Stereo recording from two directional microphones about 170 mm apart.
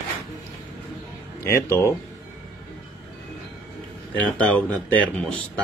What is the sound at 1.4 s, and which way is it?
Speech, 15° left (ahead or behind).